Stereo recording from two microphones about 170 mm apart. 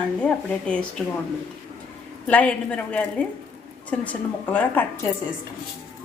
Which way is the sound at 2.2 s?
10° left (ahead or behind).